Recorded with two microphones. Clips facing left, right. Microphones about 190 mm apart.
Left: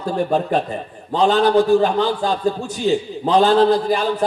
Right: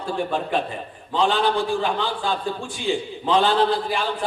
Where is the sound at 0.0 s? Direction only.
40° left (ahead or behind).